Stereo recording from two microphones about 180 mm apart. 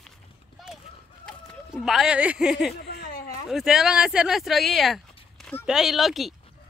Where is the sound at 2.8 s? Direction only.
65° left (ahead or behind).